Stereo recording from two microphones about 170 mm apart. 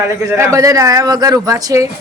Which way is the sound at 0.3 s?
15° right (ahead or behind).